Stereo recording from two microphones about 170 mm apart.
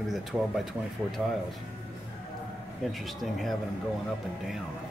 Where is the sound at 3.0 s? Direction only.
Centre (ahead or behind).